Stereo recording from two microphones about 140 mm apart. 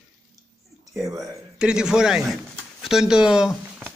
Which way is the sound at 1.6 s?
5° right (ahead or behind).